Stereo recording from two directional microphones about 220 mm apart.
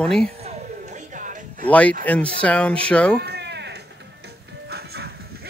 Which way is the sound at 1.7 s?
5° left (ahead or behind).